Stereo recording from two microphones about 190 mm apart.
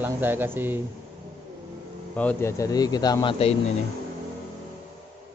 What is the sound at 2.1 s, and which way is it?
Speech, 10° left (ahead or behind).